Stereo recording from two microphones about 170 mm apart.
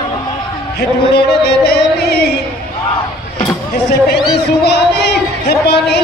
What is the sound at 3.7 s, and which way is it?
Speech, 80° left.